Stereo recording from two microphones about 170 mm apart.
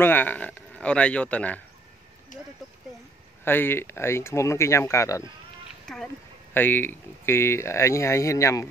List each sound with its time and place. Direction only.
0.0 s speech: 10° left (ahead or behind)
3.4 s speech: 10° left (ahead or behind)
5.9 s speech: 5° left (ahead or behind)